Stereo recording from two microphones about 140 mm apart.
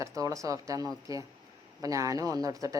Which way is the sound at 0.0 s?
25° right (ahead or behind).